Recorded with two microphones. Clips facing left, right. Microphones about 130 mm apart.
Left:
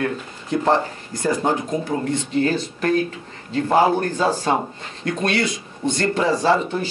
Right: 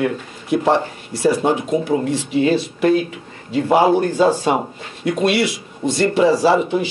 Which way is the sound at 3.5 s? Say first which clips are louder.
Right 3 dB; 15° right (ahead or behind).